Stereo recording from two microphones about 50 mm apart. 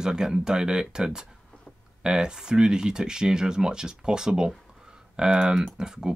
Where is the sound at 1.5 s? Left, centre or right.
Left.